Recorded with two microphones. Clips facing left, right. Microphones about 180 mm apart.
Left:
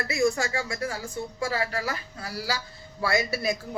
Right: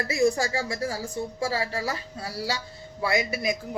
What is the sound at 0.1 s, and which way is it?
A man's voice, 35° right (ahead or behind).